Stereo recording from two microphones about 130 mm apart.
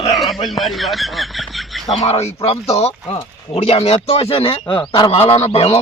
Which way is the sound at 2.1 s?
50° left (ahead or behind).